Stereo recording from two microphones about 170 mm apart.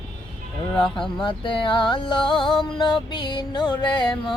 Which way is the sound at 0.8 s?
30° left (ahead or behind).